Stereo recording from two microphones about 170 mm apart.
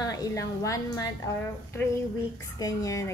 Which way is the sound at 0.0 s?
20° left (ahead or behind).